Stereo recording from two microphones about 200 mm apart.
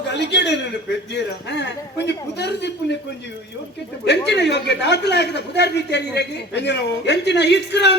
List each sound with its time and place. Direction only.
0.1 s speech: 60° left (ahead or behind)
4.3 s speech: 60° left (ahead or behind)